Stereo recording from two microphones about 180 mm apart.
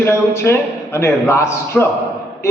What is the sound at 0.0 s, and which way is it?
A man's voice, 15° left (ahead or behind).